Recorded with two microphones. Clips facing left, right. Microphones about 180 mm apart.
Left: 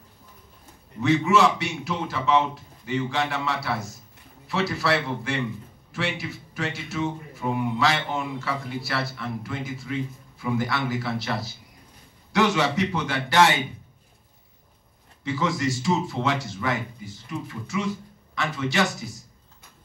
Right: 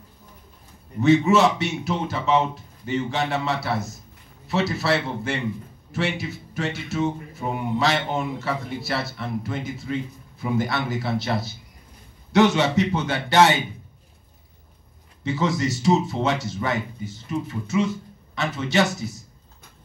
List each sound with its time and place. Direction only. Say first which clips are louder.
1.3 s speech: right 2 dB; 25° right (ahead or behind)
15.2 s speech: right 2 dB; 25° right (ahead or behind)